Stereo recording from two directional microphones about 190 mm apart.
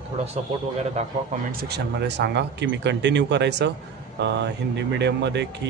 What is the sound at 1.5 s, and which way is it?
Speech, 60° right (ahead or behind).